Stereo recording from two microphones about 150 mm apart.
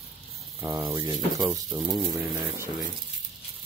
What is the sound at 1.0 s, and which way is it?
Speech, 30° right (ahead or behind).